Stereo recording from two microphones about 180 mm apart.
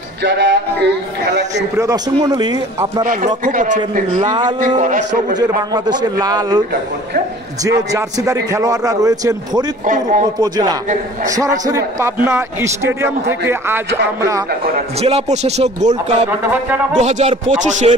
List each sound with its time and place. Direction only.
0.2 s music: 75° right (ahead or behind)
1.8 s a man's voice: 20° right (ahead or behind)
3.0 s a man's voice: 45° right (ahead or behind)
4.2 s a man's voice: 25° right (ahead or behind)
4.7 s a man's voice: 45° right (ahead or behind)
5.7 s a man's voice: 20° right (ahead or behind)
7.9 s a man's voice: 20° right (ahead or behind)
9.8 s a man's voice: 45° right (ahead or behind)
10.4 s a man's voice: 20° right (ahead or behind)
15.0 s speech: 35° right (ahead or behind)
16.3 s a man's voice: 10° right (ahead or behind)
16.9 s speech: 40° right (ahead or behind)